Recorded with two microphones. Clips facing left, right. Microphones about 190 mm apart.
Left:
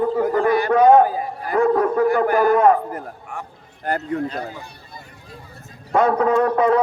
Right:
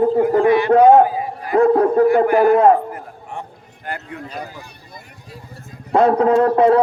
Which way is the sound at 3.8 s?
40° left (ahead or behind).